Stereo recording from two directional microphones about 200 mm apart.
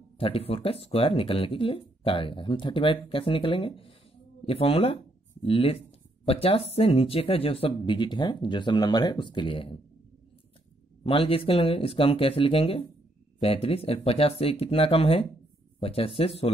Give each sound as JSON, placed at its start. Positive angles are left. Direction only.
{"t": 0.2, "sound": "speech", "side_deg": 30}
{"t": 11.1, "sound": "speech", "side_deg": 30}